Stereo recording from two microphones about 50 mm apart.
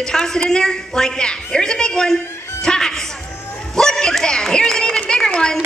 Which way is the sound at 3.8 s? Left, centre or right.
Centre.